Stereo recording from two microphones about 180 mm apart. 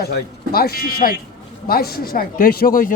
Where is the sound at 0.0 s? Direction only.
60° left (ahead or behind).